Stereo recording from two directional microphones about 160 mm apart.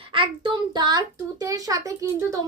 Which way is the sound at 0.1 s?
30° right (ahead or behind).